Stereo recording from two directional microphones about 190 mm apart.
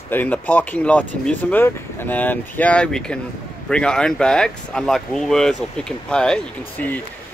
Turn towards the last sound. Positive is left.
turn(degrees=10)  # may be behind; listen again after turning